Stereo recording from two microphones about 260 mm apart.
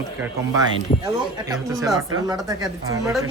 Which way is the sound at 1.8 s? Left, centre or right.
Centre.